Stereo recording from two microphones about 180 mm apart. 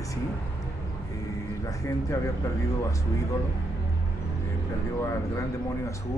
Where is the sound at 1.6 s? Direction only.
15° left (ahead or behind).